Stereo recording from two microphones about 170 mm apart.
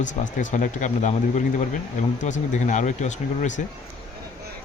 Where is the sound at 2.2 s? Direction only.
45° left (ahead or behind).